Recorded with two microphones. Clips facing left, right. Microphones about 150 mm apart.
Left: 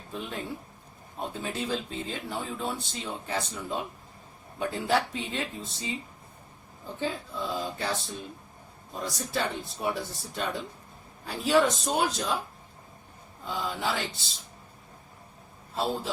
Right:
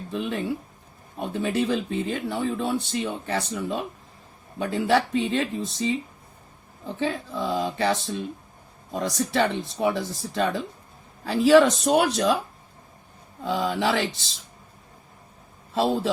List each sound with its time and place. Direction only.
0.1 s speech: 75° right (ahead or behind)
7.0 s speech: 90° right; by 12.4 s 70° right (ahead or behind)
13.4 s speech: 90° right
15.7 s speech: 90° right